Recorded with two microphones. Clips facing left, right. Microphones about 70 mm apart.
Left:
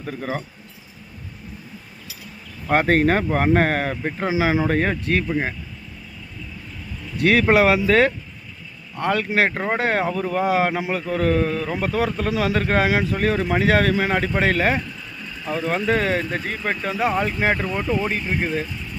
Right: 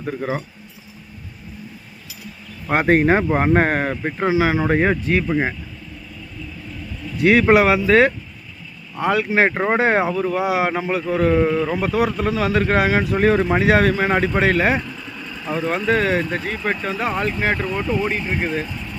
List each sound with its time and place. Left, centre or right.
0.0 s speech: centre
2.6 s speech: centre
7.2 s speech: centre
9.5 s speech: right
10.1 s speech: centre
11.7 s speech: centre
12.3 s speech: centre
13.1 s speech: right
13.5 s speech: centre